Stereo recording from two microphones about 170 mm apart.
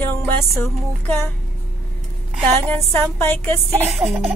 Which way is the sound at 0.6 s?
15° left (ahead or behind).